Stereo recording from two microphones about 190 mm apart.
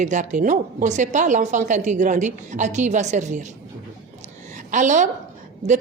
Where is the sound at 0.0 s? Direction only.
40° right (ahead or behind).